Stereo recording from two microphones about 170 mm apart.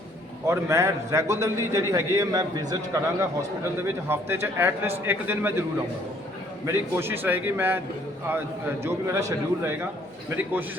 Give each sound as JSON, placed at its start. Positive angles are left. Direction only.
{"t": 0.4, "sound": "a man's voice", "side_deg": -15}
{"t": 6.7, "sound": "a man's voice", "side_deg": -15}
{"t": 10.2, "sound": "a man's voice", "side_deg": -10}